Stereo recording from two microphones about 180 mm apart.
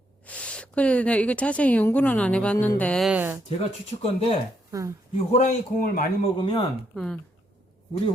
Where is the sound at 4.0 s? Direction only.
35° left (ahead or behind).